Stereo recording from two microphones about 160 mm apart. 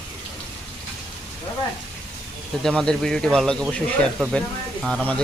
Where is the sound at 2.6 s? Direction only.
5° left (ahead or behind).